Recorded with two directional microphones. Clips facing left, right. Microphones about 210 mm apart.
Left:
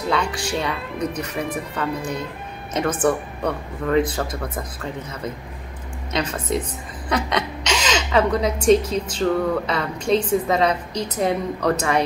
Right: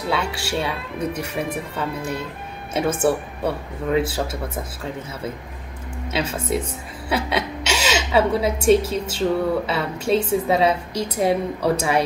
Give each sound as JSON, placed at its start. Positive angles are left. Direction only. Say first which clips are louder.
{"t": 0.1, "sound": "a woman's voice", "louder": "left 1 dB", "side_deg": -5}
{"t": 6.1, "sound": "a woman's voice", "louder": "even", "side_deg": -5}
{"t": 7.1, "sound": "a sound", "louder": "even", "side_deg": -10}
{"t": 9.2, "sound": "a woman's voice", "louder": "even", "side_deg": -5}